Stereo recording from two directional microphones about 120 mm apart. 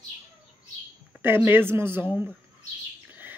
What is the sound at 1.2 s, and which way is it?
Speech, 15° right (ahead or behind).